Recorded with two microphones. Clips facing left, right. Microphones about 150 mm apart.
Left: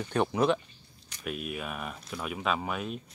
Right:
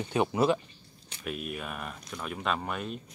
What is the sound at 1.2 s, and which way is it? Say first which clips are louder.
Speech: left 1 dB; centre (ahead or behind).